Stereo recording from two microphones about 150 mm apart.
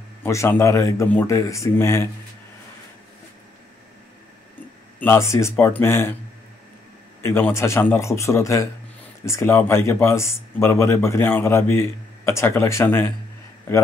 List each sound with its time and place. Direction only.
0.2 s speech: 15° left (ahead or behind)
5.0 s speech: 20° left (ahead or behind)
7.2 s speech: 15° left (ahead or behind)